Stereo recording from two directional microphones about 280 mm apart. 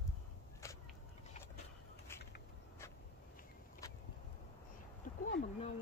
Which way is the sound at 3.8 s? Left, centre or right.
Centre.